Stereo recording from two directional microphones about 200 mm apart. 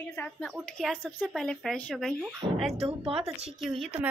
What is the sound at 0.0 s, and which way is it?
Speech, 10° left (ahead or behind).